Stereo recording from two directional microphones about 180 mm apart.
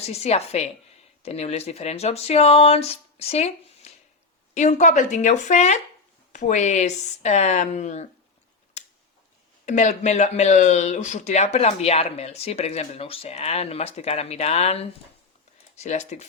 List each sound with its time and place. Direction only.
0.1 s speech: 35° left (ahead or behind)
9.6 s speech: 40° left (ahead or behind)